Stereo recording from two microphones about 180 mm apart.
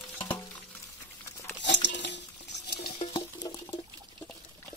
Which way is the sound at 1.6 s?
80° left.